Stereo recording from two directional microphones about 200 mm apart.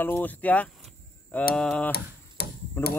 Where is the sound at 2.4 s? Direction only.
50° left (ahead or behind).